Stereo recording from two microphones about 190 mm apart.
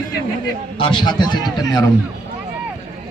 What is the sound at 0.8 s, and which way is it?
A man's voice, 25° left (ahead or behind).